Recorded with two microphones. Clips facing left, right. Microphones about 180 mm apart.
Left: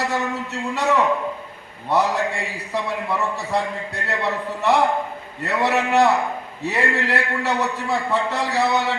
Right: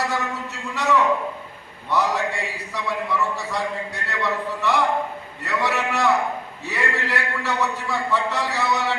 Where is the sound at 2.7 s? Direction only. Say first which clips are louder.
Left 1 dB; 60° left (ahead or behind).